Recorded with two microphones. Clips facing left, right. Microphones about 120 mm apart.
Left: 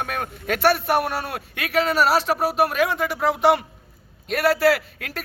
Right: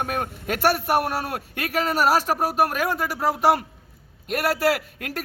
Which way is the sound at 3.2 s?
40° right (ahead or behind).